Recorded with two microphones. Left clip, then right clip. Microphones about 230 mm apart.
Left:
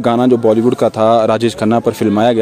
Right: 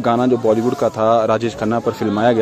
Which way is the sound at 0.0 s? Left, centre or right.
Left.